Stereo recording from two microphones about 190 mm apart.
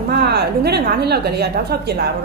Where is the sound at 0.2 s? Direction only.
60° right (ahead or behind).